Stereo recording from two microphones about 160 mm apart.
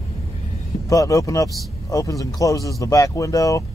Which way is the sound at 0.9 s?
20° left (ahead or behind).